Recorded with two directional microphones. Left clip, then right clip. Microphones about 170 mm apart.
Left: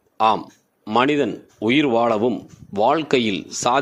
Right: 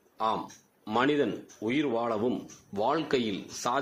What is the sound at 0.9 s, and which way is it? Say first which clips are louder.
Speech: left 8 dB; 40° left (ahead or behind).